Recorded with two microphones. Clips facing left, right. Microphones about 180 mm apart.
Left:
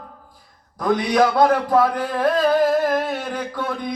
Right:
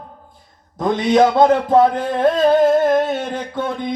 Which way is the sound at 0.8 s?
25° right (ahead or behind).